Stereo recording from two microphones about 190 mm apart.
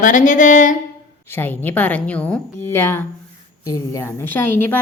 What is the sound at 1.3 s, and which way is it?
A woman's voice, 10° left (ahead or behind).